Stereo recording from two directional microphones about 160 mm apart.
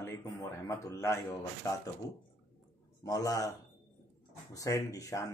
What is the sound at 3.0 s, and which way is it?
Speech, 20° left (ahead or behind).